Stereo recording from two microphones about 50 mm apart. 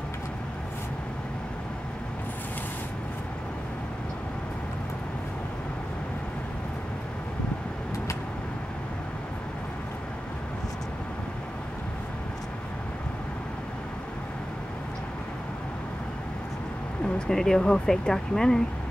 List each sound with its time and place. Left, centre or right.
17.0 s speech: centre